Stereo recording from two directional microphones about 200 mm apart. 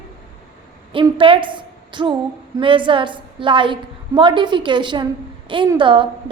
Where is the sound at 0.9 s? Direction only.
25° right (ahead or behind).